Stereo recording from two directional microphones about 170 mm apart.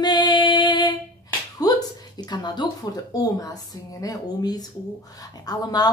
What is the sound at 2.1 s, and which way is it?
Speech, 25° left (ahead or behind).